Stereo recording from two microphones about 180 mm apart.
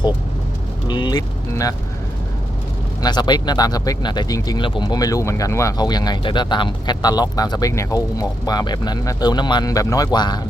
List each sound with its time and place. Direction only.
0.9 s vehicle: 25° left (ahead or behind)
3.0 s speech: 25° left (ahead or behind)